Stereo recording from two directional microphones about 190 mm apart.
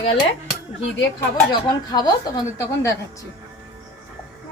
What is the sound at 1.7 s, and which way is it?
A woman's voice, 20° left (ahead or behind).